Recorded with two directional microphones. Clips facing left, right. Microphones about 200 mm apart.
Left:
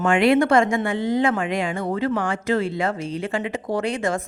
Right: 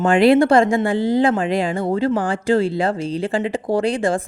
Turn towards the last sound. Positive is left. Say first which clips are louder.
# right 5 dB
turn(degrees=-30)  # may be behind; listen again after turning